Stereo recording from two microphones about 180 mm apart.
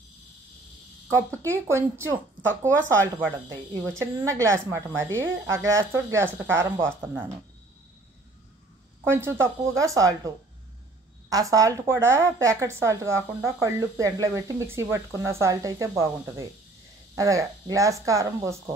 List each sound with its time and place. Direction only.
1.1 s a woman's voice: 15° right (ahead or behind)
9.0 s a woman's voice: 15° right (ahead or behind)